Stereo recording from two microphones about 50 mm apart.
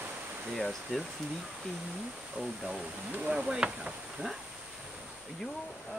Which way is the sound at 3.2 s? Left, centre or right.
Centre.